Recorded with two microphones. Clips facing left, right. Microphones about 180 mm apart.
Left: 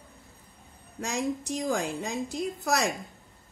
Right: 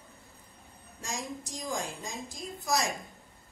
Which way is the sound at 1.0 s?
65° left (ahead or behind).